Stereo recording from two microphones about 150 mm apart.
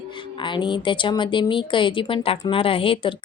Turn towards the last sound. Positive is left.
turn(degrees=35)  # may be behind; listen again after turning